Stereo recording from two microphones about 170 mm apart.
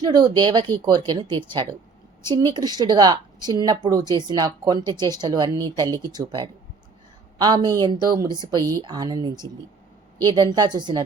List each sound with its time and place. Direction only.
0.0 s speech: 25° right (ahead or behind)